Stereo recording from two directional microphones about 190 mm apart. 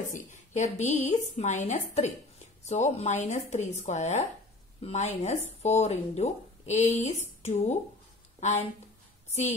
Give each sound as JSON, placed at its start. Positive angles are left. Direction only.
{"t": 0.1, "sound": "a woman's voice", "side_deg": 40}